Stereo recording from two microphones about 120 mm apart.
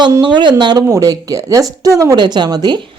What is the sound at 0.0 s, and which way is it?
Speech, 40° right (ahead or behind).